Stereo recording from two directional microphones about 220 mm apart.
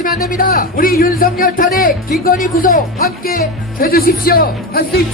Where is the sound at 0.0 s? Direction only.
40° left (ahead or behind).